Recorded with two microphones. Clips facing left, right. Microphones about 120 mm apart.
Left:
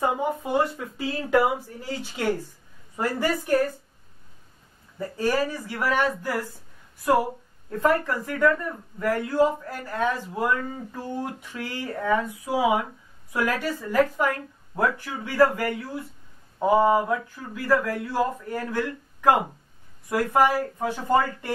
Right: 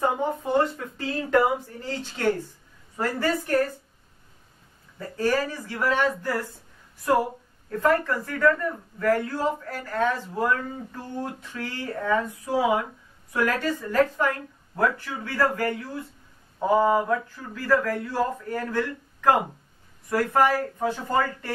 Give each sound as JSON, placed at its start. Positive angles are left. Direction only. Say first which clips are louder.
{"t": 0.0, "sound": "speech", "louder": "even", "side_deg": 5}
{"t": 4.9, "sound": "speech", "louder": "even", "side_deg": 15}
{"t": 7.7, "sound": "speech", "louder": "even", "side_deg": 15}